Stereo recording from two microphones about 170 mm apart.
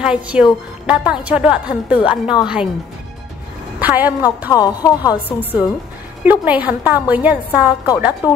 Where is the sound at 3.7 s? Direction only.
10° right (ahead or behind).